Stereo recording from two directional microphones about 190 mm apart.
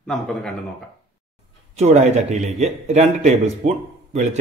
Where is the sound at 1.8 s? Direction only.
35° right (ahead or behind).